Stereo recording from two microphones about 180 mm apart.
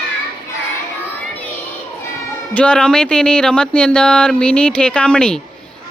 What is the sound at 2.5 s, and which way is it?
Speech, 5° left (ahead or behind).